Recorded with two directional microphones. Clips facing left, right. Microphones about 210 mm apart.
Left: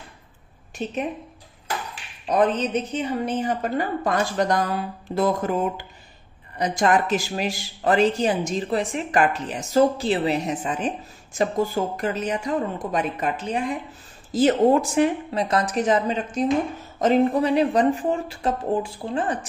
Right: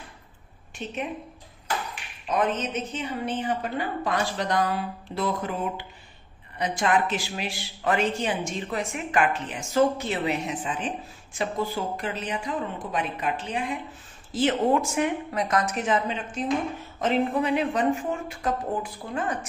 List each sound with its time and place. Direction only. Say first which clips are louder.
0.8 s speech: left 6 dB; 40° left (ahead or behind)
2.2 s a woman's voice: left 5 dB; 35° left (ahead or behind)